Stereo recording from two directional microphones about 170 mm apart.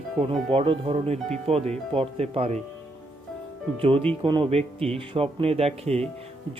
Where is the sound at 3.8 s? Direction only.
35° right (ahead or behind).